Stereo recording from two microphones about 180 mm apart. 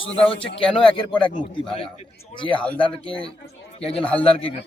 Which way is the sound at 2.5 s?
5° left (ahead or behind).